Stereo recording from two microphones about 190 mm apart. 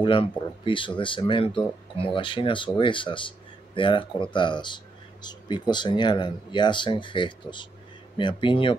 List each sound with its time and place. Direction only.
0.0 s speech: 25° left (ahead or behind)